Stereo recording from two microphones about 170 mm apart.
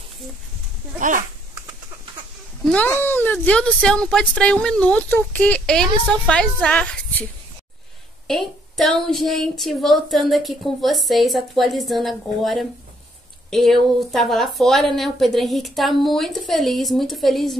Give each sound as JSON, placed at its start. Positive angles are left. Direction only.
{"t": 0.9, "sound": "a child's voice", "side_deg": -50}
{"t": 2.6, "sound": "speech", "side_deg": 10}
{"t": 8.3, "sound": "speech", "side_deg": 0}